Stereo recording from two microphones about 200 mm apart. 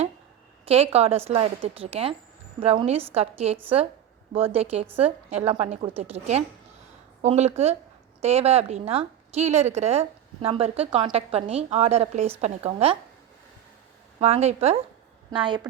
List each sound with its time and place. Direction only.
0.6 s a woman's voice: 30° right (ahead or behind)
14.2 s a woman's voice: 30° right (ahead or behind)